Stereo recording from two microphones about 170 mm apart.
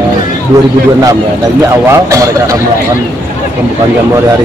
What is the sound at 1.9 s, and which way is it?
Speech, 20° right (ahead or behind).